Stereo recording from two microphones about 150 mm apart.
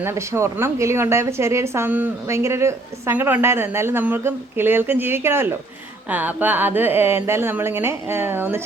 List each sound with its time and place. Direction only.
0.0 s a woman's voice: 20° right (ahead or behind)